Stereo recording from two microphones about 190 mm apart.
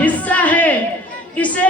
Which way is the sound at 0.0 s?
10° left (ahead or behind).